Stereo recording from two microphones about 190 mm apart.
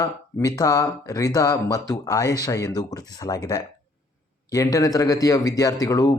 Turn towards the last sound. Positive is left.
turn(degrees=15)  # may be behind; listen again after turning